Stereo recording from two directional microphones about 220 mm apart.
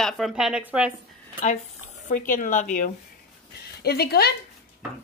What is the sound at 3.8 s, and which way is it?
Speech, 45° left (ahead or behind).